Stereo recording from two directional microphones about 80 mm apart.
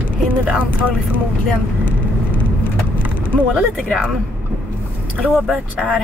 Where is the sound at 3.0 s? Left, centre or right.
Right.